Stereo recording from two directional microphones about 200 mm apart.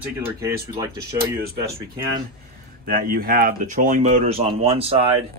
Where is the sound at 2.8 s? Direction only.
45° right (ahead or behind).